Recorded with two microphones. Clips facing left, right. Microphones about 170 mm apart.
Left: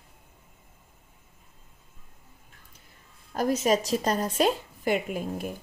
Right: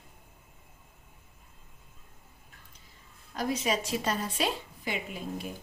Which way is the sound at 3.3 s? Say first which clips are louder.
Left 6 dB; 45° left (ahead or behind).